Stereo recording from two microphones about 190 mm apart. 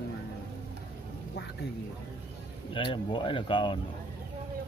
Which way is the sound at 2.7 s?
25° left (ahead or behind).